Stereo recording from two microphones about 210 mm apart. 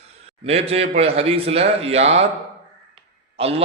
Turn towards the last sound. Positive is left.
turn(degrees=-30)  # may be behind; listen again after turning